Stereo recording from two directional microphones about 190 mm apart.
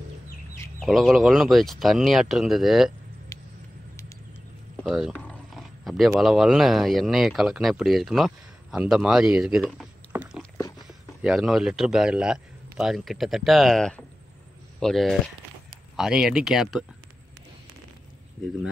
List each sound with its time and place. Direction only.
0.7 s speech: centre (ahead or behind)
3.3 s vehicle: 15° left (ahead or behind)
4.8 s speech: 5° right (ahead or behind)